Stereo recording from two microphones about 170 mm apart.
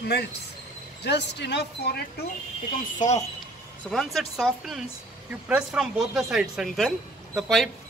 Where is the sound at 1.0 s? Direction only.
85° left.